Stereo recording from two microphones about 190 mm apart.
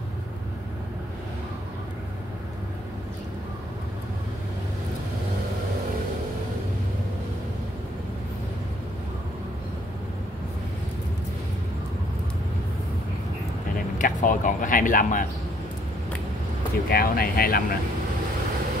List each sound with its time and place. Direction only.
13.9 s speech: 45° left (ahead or behind)
16.9 s speech: 50° left (ahead or behind)